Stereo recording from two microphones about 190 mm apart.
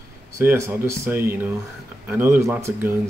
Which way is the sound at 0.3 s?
15° right (ahead or behind).